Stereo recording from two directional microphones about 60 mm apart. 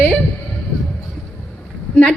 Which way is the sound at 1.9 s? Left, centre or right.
Left.